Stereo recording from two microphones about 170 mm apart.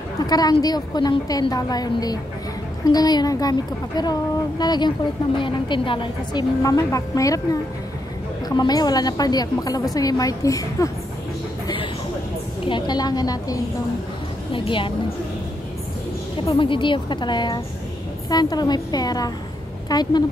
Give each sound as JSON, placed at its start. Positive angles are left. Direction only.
{"t": 0.3, "sound": "a woman's voice", "side_deg": 25}
{"t": 8.5, "sound": "a woman's voice", "side_deg": 25}
{"t": 11.6, "sound": "a sound", "side_deg": 30}
{"t": 12.6, "sound": "a woman's voice", "side_deg": 25}
{"t": 16.4, "sound": "a woman's voice", "side_deg": 30}